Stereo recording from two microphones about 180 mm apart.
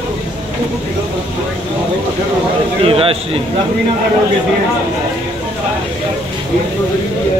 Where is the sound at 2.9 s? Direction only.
30° right (ahead or behind).